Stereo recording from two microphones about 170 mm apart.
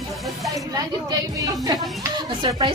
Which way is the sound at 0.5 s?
20° right (ahead or behind).